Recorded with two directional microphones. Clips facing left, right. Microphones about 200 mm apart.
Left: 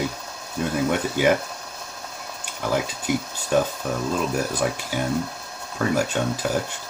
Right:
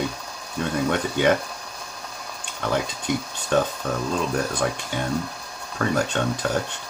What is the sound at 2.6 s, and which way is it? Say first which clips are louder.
Speech: left 1 dB; 10° left (ahead or behind).